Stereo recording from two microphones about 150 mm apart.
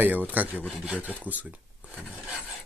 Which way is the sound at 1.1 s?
10° right (ahead or behind).